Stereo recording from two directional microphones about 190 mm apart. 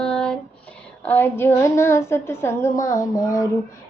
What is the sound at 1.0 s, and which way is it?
Child singing, 10° left (ahead or behind).